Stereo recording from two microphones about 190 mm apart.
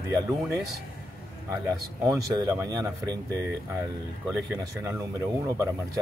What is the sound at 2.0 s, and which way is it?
Speech, 15° right (ahead or behind).